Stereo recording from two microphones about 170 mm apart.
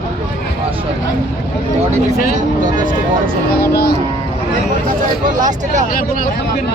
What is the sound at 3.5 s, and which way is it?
Speech, 65° left (ahead or behind).